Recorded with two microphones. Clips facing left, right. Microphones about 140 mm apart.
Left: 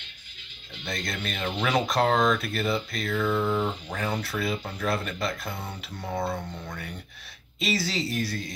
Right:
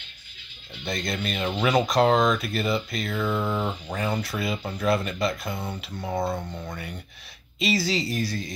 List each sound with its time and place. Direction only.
0.8 s speech: centre (ahead or behind)
6.0 s speech: 20° right (ahead or behind)
7.5 s speech: centre (ahead or behind)